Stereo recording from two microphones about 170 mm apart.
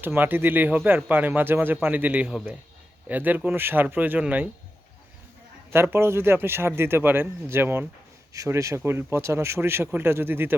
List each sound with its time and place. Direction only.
0.0 s speech: 10° right (ahead or behind)
5.7 s speech: 15° right (ahead or behind)